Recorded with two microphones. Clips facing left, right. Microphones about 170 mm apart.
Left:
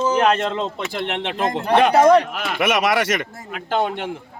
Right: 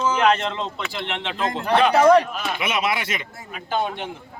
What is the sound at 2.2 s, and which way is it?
Speech, 65° left (ahead or behind).